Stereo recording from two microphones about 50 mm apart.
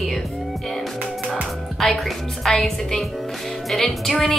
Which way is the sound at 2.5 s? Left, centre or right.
Centre.